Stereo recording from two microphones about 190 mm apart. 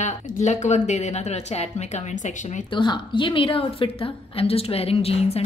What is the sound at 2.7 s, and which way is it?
A woman's voice, 25° left (ahead or behind).